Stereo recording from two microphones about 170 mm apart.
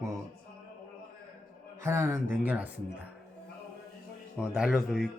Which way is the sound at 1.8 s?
15° right (ahead or behind).